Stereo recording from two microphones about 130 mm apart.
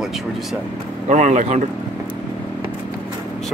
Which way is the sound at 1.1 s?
65° right (ahead or behind).